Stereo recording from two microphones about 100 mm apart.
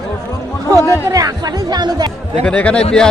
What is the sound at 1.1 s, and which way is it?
Speech, 40° right (ahead or behind).